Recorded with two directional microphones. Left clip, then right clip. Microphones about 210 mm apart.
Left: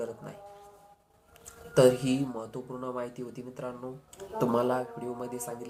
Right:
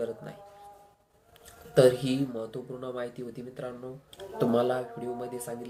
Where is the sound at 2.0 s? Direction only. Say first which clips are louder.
Even; 5° right (ahead or behind).